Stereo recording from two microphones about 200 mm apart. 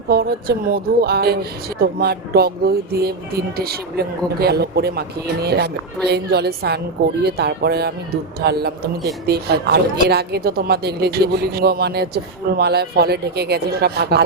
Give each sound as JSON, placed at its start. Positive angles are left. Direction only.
{"t": 0.1, "sound": "a woman's voice", "side_deg": -50}